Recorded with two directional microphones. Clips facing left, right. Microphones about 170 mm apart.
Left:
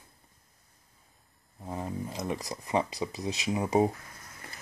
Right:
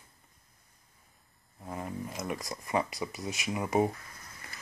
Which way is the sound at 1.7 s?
25° left (ahead or behind).